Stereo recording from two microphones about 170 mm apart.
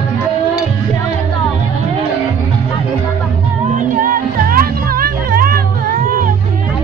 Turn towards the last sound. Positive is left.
turn(degrees=-55)  # may be behind; listen again after turning